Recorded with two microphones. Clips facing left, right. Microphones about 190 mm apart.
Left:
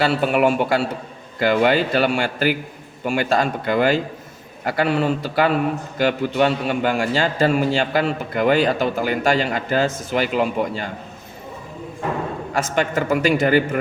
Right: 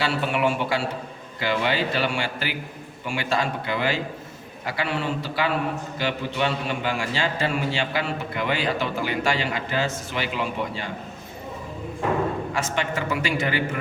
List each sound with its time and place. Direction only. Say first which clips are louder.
0.0 s a man's voice: left 6 dB; 45° left (ahead or behind)
12.5 s a man's voice: left 6 dB; 45° left (ahead or behind)